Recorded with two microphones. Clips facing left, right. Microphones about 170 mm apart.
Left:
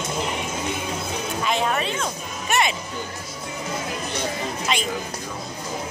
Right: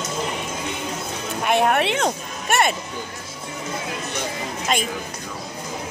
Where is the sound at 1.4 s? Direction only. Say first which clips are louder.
Right 6 dB; 60° right (ahead or behind).